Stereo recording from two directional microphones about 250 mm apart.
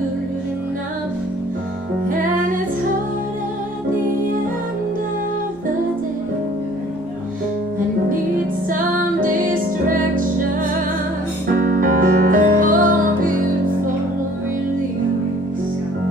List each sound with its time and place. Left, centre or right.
8.6 s music: right
11.5 s music: right